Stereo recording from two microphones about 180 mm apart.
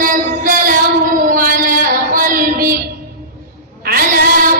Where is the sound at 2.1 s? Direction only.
50° right (ahead or behind).